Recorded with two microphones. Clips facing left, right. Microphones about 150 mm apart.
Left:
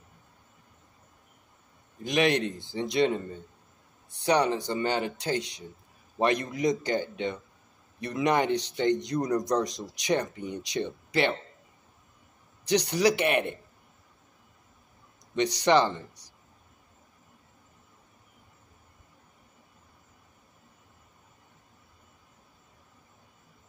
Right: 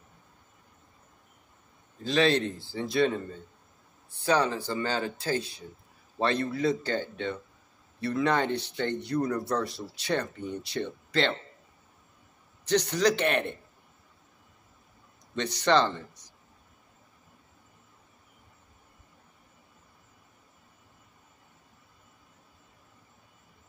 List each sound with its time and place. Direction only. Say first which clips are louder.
2.0 s a man's voice: even; 15° left (ahead or behind)
12.6 s speech: left 1 dB; 15° left (ahead or behind)
15.3 s speech: left 2 dB; 15° left (ahead or behind)